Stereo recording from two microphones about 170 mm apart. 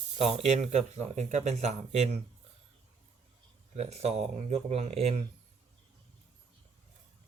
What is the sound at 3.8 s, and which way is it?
Speech, 40° right (ahead or behind).